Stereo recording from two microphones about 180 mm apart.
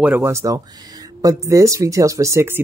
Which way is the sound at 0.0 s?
10° right (ahead or behind).